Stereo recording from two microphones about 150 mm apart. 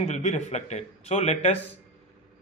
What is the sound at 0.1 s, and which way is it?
Speech, 50° left (ahead or behind).